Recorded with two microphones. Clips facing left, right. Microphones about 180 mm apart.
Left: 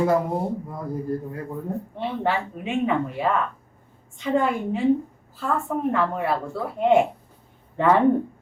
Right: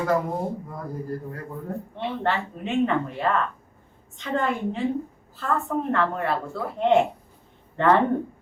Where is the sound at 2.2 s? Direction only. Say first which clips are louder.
Left 1 dB; 10° left (ahead or behind).